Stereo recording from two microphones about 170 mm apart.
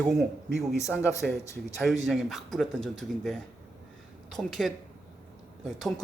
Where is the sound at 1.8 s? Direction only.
Centre (ahead or behind).